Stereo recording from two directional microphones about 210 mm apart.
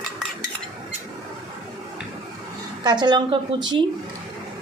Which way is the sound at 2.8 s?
20° right (ahead or behind).